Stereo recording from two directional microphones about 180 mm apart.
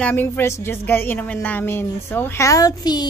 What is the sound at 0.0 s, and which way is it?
A woman's voice, 10° left (ahead or behind).